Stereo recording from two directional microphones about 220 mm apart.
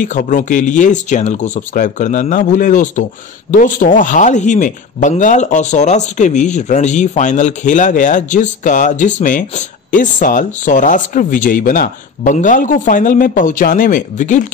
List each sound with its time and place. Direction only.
0.0 s speech: 35° left (ahead or behind)